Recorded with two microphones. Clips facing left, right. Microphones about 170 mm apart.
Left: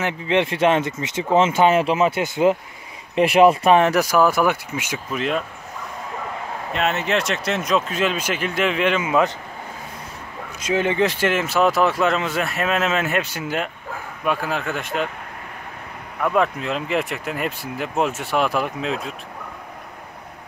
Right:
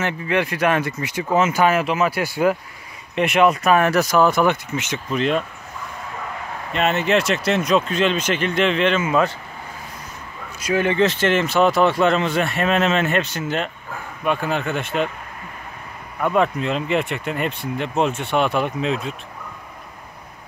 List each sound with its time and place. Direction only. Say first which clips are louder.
0.0 s speech: left 1 dB; 25° left (ahead or behind)
3.9 s speech: right 1 dB; 10° left (ahead or behind)
6.7 s speech: right 3 dB; centre (ahead or behind); by 9.3 s 15° left (ahead or behind)
10.6 s speech: right 1 dB; 20° left (ahead or behind); by 15.0 s centre (ahead or behind)
16.2 s speech: right 1 dB; centre (ahead or behind)